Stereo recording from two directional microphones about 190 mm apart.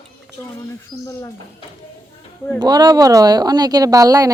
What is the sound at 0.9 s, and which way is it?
Speech, 25° left (ahead or behind).